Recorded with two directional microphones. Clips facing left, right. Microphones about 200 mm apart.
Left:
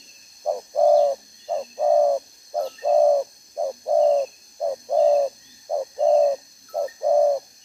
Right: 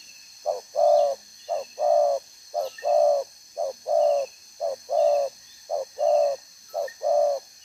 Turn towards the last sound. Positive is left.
turn(degrees=10)  # may be behind; listen again after turning